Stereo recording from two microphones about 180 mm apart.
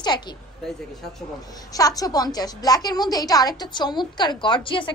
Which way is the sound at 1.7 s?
20° left (ahead or behind).